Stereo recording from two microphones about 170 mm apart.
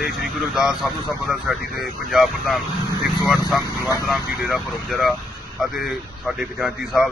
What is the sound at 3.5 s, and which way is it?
Speech, 20° left (ahead or behind).